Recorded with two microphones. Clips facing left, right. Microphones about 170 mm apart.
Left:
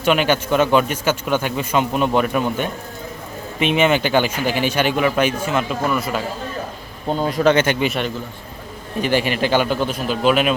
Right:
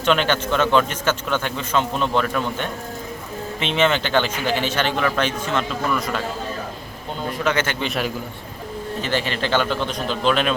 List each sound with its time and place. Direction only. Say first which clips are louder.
0.0 s a man's voice: left 2 dB; 10° left (ahead or behind)
7.5 s a man's voice: left 6 dB; 20° left (ahead or behind)
7.9 s a man's voice: left 2 dB; centre (ahead or behind)
9.0 s a man's voice: left 6 dB; 15° left (ahead or behind)